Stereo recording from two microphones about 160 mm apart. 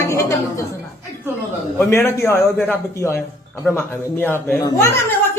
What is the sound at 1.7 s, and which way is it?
A man's voice, 15° left (ahead or behind).